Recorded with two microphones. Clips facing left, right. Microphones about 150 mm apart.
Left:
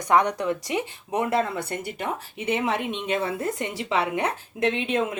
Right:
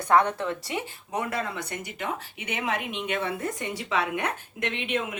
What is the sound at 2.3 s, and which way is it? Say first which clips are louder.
Speech: left 8 dB; 30° left (ahead or behind).